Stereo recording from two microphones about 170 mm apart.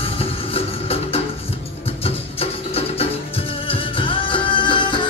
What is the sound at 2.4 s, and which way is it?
Music, 35° left (ahead or behind).